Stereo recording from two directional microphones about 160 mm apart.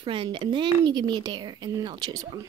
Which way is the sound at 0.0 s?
35° right (ahead or behind).